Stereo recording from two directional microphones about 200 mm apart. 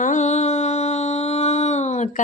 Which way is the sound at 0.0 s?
35° left (ahead or behind).